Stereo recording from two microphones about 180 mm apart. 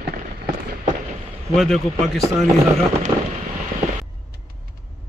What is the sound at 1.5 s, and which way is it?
Speech, centre (ahead or behind).